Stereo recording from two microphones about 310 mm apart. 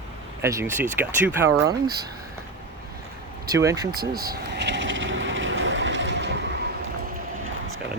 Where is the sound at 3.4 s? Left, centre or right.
Centre.